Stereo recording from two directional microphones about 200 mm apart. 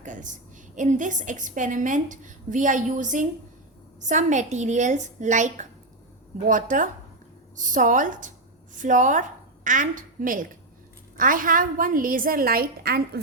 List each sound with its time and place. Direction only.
0.0 s a woman's voice: 40° right (ahead or behind)